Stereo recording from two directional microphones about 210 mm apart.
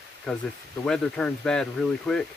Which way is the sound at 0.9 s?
5° left (ahead or behind).